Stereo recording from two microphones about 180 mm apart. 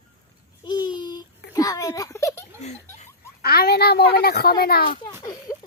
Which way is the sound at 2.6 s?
40° left (ahead or behind).